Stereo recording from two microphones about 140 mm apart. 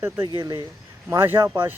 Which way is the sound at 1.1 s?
15° right (ahead or behind).